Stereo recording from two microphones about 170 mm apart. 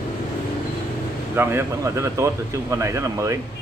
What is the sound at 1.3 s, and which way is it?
Speech, 15° right (ahead or behind).